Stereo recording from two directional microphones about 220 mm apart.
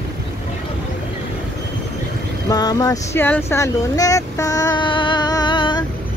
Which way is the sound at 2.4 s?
15° left (ahead or behind).